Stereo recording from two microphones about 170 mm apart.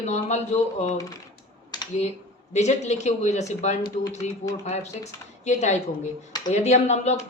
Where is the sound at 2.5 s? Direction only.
40° left (ahead or behind).